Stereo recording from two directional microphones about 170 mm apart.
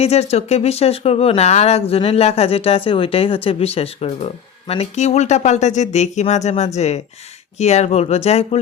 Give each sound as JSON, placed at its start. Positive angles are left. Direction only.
{"t": 0.0, "sound": "speech", "side_deg": 40}